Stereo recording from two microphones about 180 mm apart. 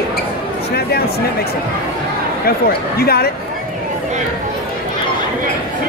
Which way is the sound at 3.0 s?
60° left (ahead or behind).